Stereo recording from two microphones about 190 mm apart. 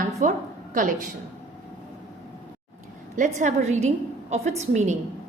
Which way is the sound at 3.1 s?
40° right (ahead or behind).